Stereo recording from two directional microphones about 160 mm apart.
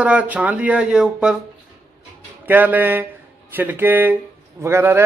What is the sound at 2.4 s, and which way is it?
A man's voice, 10° right (ahead or behind).